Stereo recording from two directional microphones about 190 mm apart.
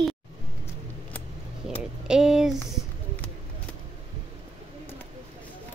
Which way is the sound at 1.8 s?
5° right (ahead or behind).